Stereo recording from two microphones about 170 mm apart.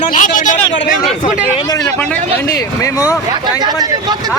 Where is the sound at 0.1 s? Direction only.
50° left (ahead or behind).